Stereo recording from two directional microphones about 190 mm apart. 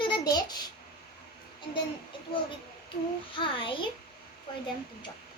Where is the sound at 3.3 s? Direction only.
25° left (ahead or behind).